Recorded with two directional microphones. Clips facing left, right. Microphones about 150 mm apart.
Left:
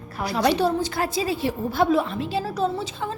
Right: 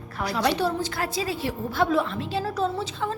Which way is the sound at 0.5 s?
15° left (ahead or behind).